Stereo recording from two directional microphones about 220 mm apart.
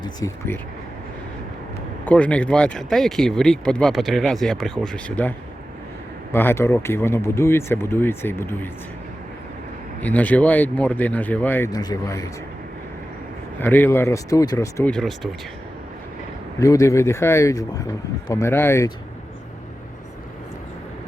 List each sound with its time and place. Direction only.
0.0 s speech: 15° left (ahead or behind)
2.0 s speech: 5° left (ahead or behind)
6.3 s speech: 10° left (ahead or behind)
10.0 s speech: 5° left (ahead or behind)
13.6 s speech: 10° left (ahead or behind)
14.9 s speech: centre (ahead or behind)
16.6 s speech: 15° left (ahead or behind)